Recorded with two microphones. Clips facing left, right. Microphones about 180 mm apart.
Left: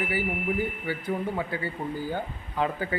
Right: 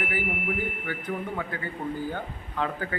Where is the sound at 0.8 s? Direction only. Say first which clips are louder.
Left 3 dB; 10° left (ahead or behind).